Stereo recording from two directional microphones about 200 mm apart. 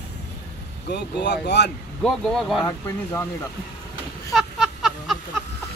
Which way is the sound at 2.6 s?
15° left (ahead or behind).